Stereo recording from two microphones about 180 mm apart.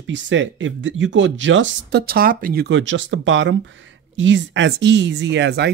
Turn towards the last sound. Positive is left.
turn(degrees=-75)  # may be behind; listen again after turning